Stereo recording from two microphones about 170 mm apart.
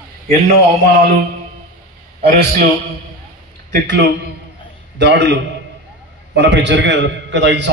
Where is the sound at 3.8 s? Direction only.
90° right.